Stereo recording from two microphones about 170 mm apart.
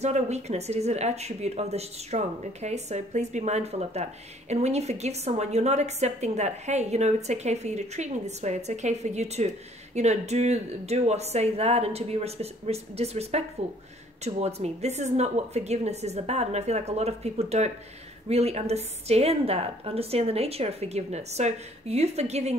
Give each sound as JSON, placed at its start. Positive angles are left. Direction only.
{"t": 0.0, "sound": "speech", "side_deg": -40}